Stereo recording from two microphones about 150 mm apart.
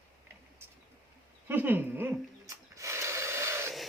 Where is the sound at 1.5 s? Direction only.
15° right (ahead or behind).